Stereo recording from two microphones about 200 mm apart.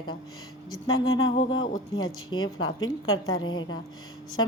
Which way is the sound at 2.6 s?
90° left.